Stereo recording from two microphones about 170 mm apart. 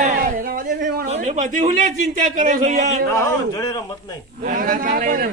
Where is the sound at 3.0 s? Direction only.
20° left (ahead or behind).